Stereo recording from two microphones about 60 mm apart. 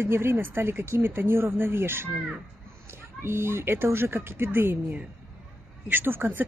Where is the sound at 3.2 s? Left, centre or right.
Right.